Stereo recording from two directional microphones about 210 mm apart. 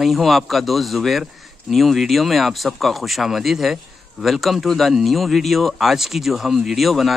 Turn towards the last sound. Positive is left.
turn(degrees=0)  # may be behind; listen again after turning